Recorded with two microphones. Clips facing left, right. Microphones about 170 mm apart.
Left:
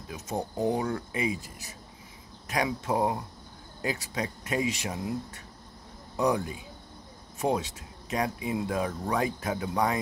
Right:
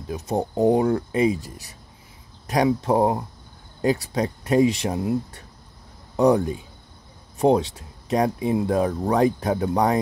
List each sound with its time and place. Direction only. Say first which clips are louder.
0.4 s speech: right 9 dB; 50° right (ahead or behind)
0.8 s speech: right 10 dB; 35° right (ahead or behind)